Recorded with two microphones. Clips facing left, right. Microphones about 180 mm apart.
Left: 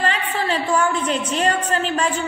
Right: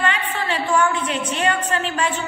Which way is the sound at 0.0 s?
35° left (ahead or behind).